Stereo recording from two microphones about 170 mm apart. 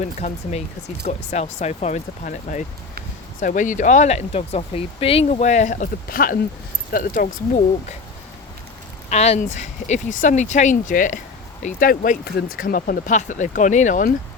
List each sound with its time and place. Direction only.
0.0 s speech: 45° left (ahead or behind)
9.0 s speech: 40° left (ahead or behind)
12.2 s speech: 65° left (ahead or behind); by 14.1 s 45° left (ahead or behind)